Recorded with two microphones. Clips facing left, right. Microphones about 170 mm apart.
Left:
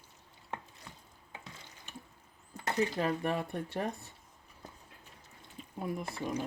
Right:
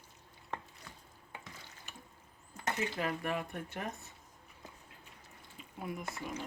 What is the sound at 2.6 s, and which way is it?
Speech, 35° left (ahead or behind).